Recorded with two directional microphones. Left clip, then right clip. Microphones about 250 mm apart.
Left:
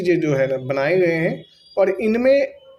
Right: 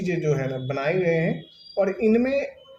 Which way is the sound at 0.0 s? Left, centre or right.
Left.